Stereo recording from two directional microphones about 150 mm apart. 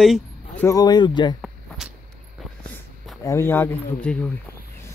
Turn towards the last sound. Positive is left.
turn(degrees=10)  # may be behind; listen again after turning